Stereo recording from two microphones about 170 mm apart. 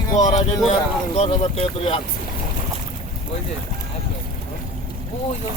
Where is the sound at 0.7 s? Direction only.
40° left (ahead or behind).